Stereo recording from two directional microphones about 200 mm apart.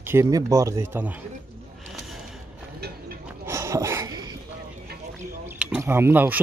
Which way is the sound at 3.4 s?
15° right (ahead or behind).